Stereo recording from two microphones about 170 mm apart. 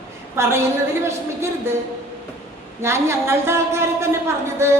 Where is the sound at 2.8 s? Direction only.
15° right (ahead or behind).